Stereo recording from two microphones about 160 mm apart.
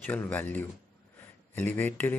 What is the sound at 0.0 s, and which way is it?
Speech, 10° left (ahead or behind).